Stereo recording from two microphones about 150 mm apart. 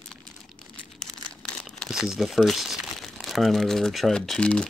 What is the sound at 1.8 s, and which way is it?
Speech, centre (ahead or behind).